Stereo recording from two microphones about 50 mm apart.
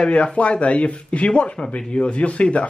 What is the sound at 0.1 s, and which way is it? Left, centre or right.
Speech, left.